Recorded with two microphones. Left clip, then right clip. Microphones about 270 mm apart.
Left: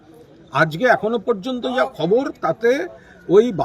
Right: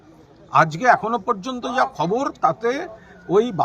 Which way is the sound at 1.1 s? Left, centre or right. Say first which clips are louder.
Left 2 dB; right.